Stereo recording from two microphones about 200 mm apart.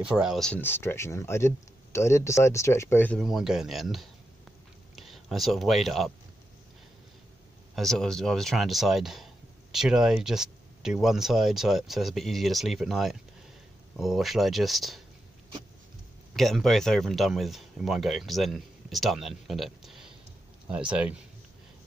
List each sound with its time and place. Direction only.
0.0 s speech: 5° right (ahead or behind)
7.7 s speech: centre (ahead or behind)
16.3 s speech: centre (ahead or behind)